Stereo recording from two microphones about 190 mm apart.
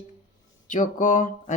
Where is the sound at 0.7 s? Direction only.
40° left (ahead or behind).